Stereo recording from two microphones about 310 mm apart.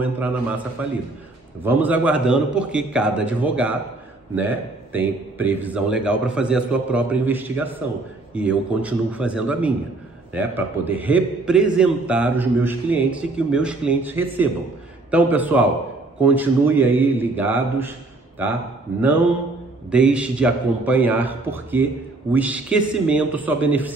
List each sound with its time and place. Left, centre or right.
0.0 s a man's voice: centre
19.9 s a man's voice: centre